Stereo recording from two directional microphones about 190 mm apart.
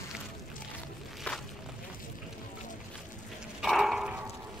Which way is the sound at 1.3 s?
5° left (ahead or behind).